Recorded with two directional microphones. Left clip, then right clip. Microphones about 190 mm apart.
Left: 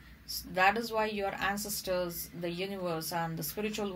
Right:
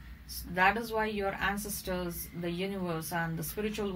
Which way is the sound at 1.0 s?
45° left (ahead or behind).